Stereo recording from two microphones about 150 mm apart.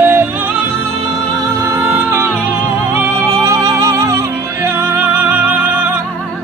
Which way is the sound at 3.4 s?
20° right (ahead or behind).